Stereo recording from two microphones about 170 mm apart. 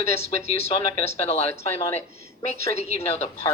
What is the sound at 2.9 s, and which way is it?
Speech, 40° left (ahead or behind).